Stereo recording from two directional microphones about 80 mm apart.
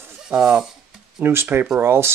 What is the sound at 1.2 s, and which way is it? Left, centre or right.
Speech, right.